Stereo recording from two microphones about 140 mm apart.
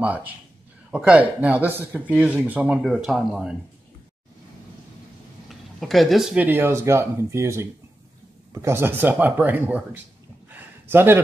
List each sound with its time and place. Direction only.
0.0 s speech: 10° right (ahead or behind)
2.8 s speech: centre (ahead or behind)
5.5 s speech: centre (ahead or behind)
10.5 s a sound: 15° right (ahead or behind)